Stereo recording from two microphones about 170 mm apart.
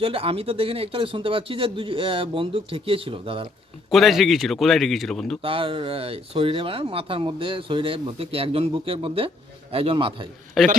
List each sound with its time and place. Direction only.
0.0 s speech: 35° right (ahead or behind)
3.9 s speech: centre (ahead or behind)
5.4 s speech: 30° right (ahead or behind)
10.6 s speech: centre (ahead or behind)